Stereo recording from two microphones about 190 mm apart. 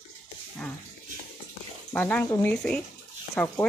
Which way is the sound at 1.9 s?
10° left (ahead or behind).